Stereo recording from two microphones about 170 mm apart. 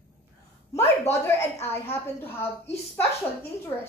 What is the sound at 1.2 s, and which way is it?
A woman's voice, 15° left (ahead or behind).